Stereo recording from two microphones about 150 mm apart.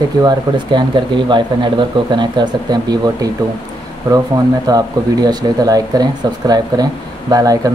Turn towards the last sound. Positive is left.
turn(degrees=-25)  # may be behind; listen again after turning